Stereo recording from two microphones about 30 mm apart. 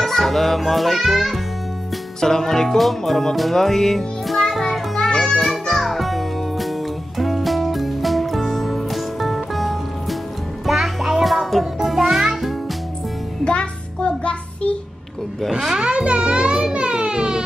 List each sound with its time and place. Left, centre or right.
0.0 s a child's voice: centre
2.1 s speech: centre
2.8 s music: centre
3.5 s speech: centre
4.4 s music: centre
5.8 s music: centre
13.4 s music: left
15.8 s music: right
16.7 s a sound: right